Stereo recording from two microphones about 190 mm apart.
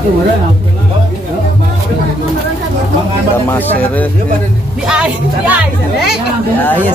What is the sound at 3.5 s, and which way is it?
Speech, 10° left (ahead or behind).